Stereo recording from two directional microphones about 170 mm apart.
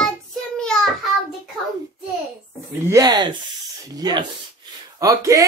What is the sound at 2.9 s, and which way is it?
Speech, 25° right (ahead or behind).